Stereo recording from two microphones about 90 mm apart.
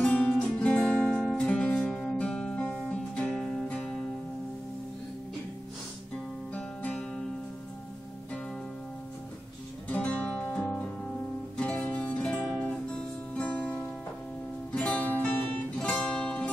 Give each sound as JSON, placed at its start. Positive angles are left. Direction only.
{"t": 0.0, "sound": "music", "side_deg": 15}
{"t": 6.5, "sound": "music", "side_deg": 15}
{"t": 9.8, "sound": "music", "side_deg": 15}